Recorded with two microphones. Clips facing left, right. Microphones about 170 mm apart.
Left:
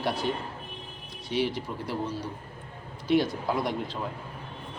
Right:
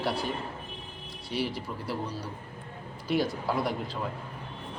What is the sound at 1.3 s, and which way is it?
Speech, 40° right (ahead or behind).